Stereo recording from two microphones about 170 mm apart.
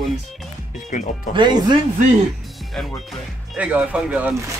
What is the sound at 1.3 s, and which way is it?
Speech, 25° right (ahead or behind).